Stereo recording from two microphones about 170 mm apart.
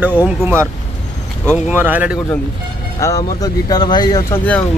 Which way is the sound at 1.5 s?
10° right (ahead or behind).